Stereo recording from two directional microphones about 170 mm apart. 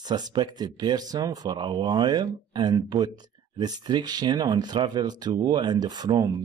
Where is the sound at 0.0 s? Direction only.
25° right (ahead or behind).